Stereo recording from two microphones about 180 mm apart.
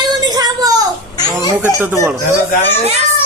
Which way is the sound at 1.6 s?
10° right (ahead or behind).